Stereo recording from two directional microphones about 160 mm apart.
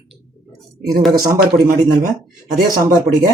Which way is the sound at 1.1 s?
65° right (ahead or behind).